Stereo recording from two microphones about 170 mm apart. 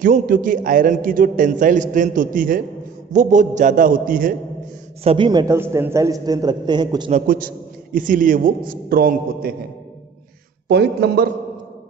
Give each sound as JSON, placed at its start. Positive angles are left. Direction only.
{"t": 0.0, "sound": "a man's voice", "side_deg": -50}
{"t": 5.0, "sound": "a man's voice", "side_deg": -30}
{"t": 7.1, "sound": "a man's voice", "side_deg": -50}
{"t": 10.7, "sound": "a man's voice", "side_deg": -75}